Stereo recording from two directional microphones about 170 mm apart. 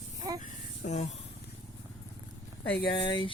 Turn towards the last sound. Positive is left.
turn(degrees=25)  # may be behind; listen again after turning